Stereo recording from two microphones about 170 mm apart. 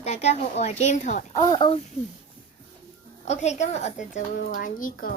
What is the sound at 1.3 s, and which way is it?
Speech, 25° left (ahead or behind).